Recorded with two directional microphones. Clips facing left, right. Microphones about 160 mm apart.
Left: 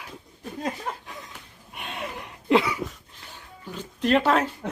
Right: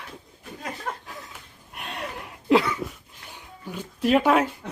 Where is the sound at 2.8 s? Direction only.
10° right (ahead or behind).